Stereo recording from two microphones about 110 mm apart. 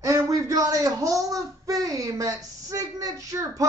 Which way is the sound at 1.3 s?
35° right (ahead or behind).